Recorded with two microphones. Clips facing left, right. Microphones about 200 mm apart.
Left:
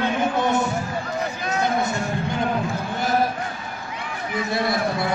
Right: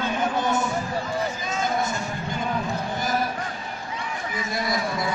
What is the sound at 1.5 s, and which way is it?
Vehicle, 65° left (ahead or behind).